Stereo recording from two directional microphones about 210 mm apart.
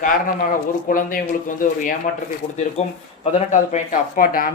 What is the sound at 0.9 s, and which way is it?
Speech, 40° left (ahead or behind).